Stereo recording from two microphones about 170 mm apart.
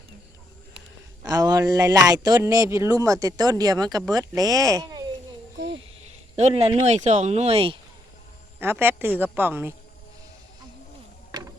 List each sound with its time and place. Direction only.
1.2 s speech: 25° right (ahead or behind)
6.3 s speech: 40° right (ahead or behind)
8.6 s a woman's voice: 15° right (ahead or behind)